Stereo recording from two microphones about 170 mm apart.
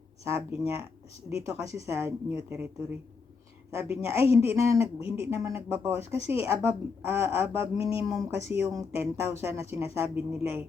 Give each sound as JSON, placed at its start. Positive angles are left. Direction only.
{"t": 0.3, "sound": "a woman's voice", "side_deg": -15}
{"t": 3.7, "sound": "a woman's voice", "side_deg": -15}